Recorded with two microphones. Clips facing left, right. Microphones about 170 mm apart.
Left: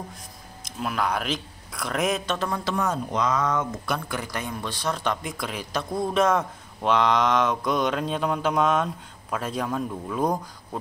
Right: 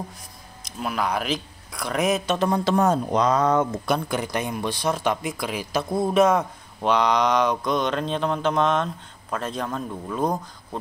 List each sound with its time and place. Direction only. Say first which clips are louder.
0.7 s speech: right 1 dB; centre (ahead or behind)
2.3 s a sound: right 6 dB; 20° right (ahead or behind)
2.7 s speech: right 6 dB; 30° right (ahead or behind); by 10.8 s 10° left (ahead or behind)